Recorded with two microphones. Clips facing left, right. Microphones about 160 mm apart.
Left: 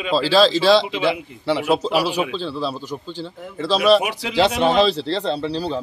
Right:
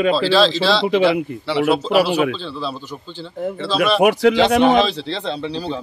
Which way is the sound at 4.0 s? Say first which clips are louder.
Right 13 dB; 50° right (ahead or behind).